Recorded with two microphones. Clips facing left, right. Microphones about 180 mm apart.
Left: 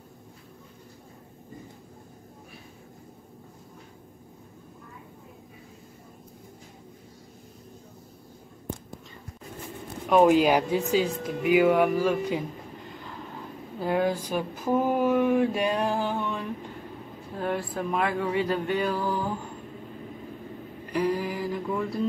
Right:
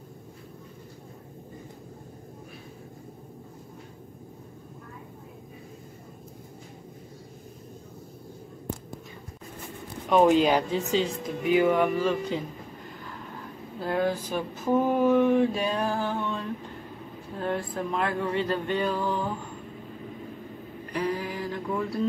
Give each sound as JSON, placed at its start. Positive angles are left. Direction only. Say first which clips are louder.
{"t": 10.0, "sound": "speech", "louder": "left 1 dB", "side_deg": 5}
{"t": 13.7, "sound": "speech", "louder": "left 1 dB", "side_deg": 15}
{"t": 20.9, "sound": "a sound", "louder": "left 3 dB", "side_deg": 10}